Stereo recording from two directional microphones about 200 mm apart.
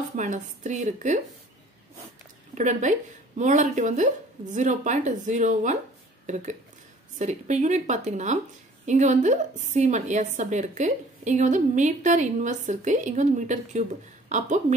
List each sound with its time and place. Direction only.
0.1 s a woman's voice: 35° right (ahead or behind)
2.5 s a woman's voice: 35° right (ahead or behind)